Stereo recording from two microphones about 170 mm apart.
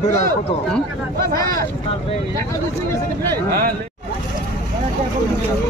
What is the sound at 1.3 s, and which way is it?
Speech, 20° left (ahead or behind).